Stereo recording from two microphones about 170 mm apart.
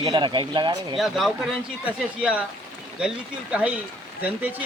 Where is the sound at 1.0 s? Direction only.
Centre (ahead or behind).